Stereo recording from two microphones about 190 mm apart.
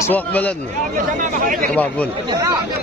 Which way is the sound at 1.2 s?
45° right (ahead or behind).